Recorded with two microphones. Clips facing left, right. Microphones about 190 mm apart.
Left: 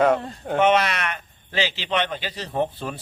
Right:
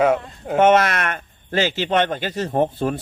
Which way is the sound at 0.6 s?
50° right (ahead or behind).